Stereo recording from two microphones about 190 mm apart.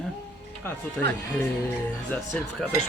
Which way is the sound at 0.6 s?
10° left (ahead or behind).